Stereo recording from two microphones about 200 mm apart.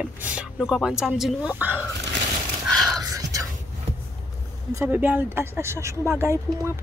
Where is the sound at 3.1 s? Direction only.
15° right (ahead or behind).